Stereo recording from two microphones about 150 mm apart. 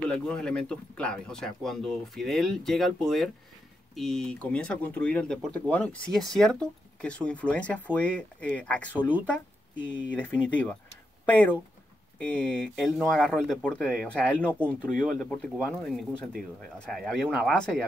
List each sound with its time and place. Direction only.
0.1 s speech: 5° left (ahead or behind)